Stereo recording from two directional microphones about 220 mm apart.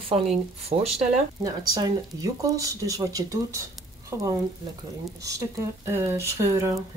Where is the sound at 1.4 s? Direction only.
15° right (ahead or behind).